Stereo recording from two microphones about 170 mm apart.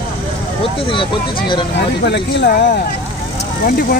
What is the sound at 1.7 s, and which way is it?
Speech, 85° left.